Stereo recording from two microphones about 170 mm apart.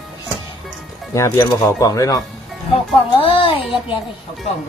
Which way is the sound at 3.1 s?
30° left (ahead or behind).